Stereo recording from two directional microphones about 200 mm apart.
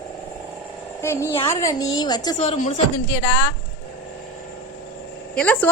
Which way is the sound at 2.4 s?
30° left (ahead or behind).